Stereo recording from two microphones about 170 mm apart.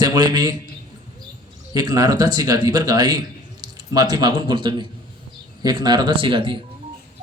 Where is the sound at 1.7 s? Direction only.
20° right (ahead or behind).